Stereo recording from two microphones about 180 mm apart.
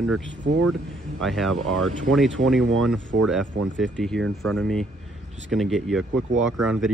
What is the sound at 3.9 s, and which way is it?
Speech, 5° left (ahead or behind).